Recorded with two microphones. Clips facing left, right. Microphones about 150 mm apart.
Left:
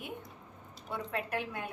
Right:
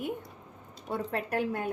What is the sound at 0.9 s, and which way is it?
Speech, 40° right (ahead or behind).